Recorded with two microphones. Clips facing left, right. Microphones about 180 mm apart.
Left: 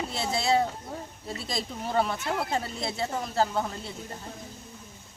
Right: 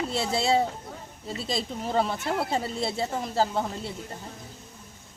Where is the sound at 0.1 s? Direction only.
30° right (ahead or behind).